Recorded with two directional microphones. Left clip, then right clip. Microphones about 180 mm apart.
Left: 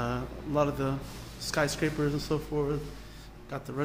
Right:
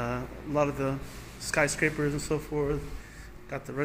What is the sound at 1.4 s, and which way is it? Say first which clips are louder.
Speech: right 3 dB; centre (ahead or behind).